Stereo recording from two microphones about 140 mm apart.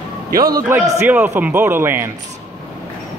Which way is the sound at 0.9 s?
15° right (ahead or behind).